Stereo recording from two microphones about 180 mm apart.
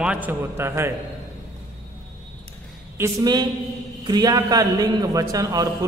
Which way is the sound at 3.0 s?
20° right (ahead or behind).